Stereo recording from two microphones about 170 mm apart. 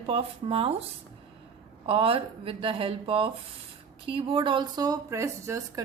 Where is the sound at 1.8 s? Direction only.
35° right (ahead or behind); by 5.6 s 15° right (ahead or behind).